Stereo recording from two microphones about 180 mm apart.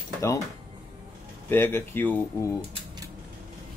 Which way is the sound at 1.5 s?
10° left (ahead or behind).